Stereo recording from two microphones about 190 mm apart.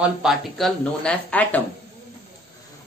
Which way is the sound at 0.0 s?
Centre (ahead or behind).